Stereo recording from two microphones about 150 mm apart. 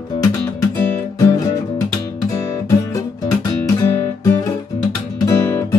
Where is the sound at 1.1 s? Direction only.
25° left (ahead or behind).